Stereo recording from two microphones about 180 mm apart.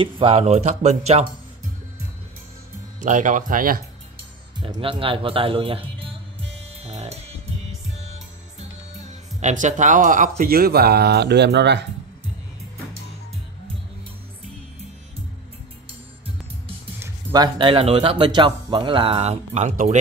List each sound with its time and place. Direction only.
0.0 s speech: 30° right (ahead or behind)
3.0 s speech: 45° right (ahead or behind)
4.6 s speech: 25° right (ahead or behind)
6.8 s music: 35° right (ahead or behind)
9.4 s speech: 45° right (ahead or behind); by 11.8 s 70° right (ahead or behind)
17.0 s speech: 20° right (ahead or behind); by 20.0 s 40° right (ahead or behind)